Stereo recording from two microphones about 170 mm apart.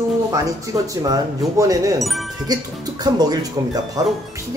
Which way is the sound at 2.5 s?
25° right (ahead or behind).